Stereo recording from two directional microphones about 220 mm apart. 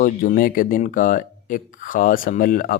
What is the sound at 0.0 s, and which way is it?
Speech, 40° left (ahead or behind).